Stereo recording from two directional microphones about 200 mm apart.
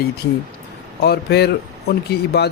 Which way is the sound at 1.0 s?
55° left (ahead or behind).